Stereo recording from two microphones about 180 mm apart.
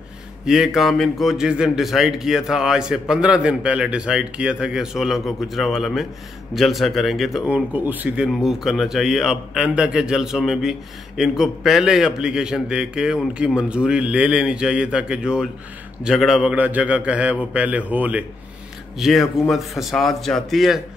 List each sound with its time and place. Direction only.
0.5 s a man's voice: centre (ahead or behind)